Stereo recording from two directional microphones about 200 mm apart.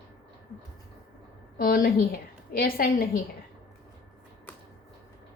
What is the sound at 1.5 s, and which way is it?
A woman's voice, 45° left (ahead or behind).